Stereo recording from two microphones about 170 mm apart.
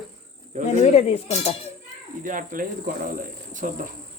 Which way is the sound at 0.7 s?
40° left (ahead or behind).